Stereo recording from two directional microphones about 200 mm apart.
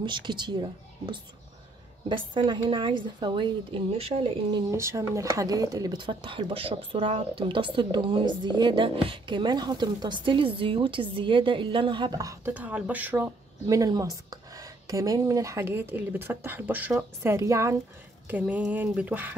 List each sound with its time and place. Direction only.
0.0 s speech: 25° right (ahead or behind)
4.6 s speech: 15° right (ahead or behind)
18.3 s a sound: 5° right (ahead or behind)